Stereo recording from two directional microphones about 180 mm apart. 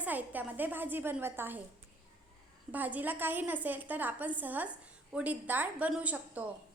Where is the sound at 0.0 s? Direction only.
10° right (ahead or behind).